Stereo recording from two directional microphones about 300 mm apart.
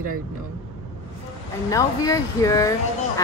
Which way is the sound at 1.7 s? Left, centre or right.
Centre.